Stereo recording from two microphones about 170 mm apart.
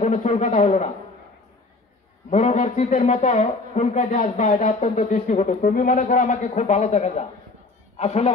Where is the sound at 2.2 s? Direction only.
45° left (ahead or behind).